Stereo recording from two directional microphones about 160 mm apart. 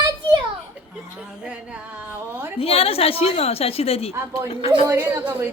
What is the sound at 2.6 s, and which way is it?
A woman's voice, 35° left (ahead or behind).